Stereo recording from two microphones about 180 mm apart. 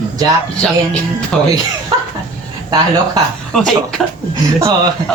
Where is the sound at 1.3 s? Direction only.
5° left (ahead or behind).